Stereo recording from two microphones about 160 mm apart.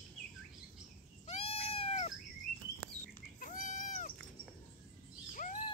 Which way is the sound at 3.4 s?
50° left (ahead or behind).